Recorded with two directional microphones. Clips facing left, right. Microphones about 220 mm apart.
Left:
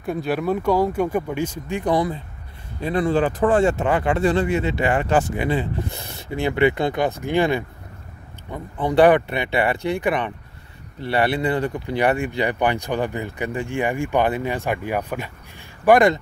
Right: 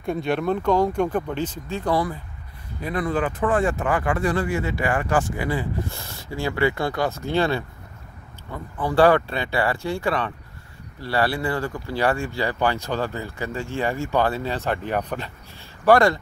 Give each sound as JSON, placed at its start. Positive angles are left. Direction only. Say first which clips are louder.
{"t": 0.0, "sound": "speech", "louder": "even", "side_deg": 5}